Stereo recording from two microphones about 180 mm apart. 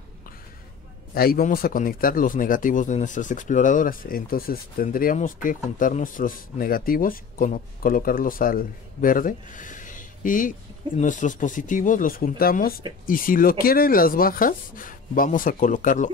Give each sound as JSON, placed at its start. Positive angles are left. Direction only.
{"t": 1.1, "sound": "speech", "side_deg": 55}